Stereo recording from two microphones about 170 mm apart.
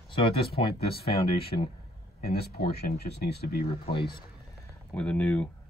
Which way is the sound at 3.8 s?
30° left (ahead or behind).